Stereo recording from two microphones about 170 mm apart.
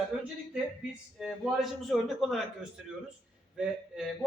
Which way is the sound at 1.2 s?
Centre (ahead or behind).